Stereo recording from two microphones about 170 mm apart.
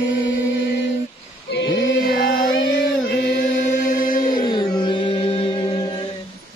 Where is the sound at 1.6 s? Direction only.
75° left (ahead or behind); by 4.4 s 55° left (ahead or behind).